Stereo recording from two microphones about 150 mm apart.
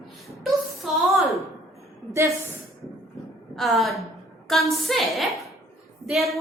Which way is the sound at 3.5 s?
Centre (ahead or behind).